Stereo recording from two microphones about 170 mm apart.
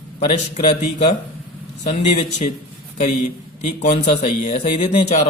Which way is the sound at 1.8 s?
40° left (ahead or behind).